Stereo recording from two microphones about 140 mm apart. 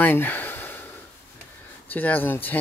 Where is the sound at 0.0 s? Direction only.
15° left (ahead or behind).